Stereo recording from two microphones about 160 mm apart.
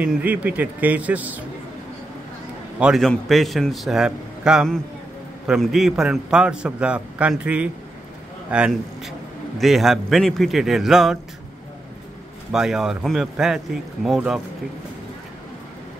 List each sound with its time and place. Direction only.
0.0 s a man's voice: 10° right (ahead or behind)
2.8 s a man's voice: centre (ahead or behind)
12.5 s a man's voice: 5° right (ahead or behind)